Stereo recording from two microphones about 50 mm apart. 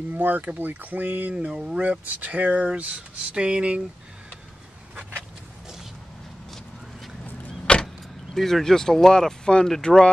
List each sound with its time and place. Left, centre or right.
0.1 s speech: right
1.3 s speech: centre
1.8 s speech: right
7.8 s speech: centre